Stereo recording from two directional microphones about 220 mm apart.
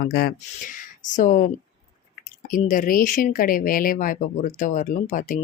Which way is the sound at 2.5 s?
40° left (ahead or behind).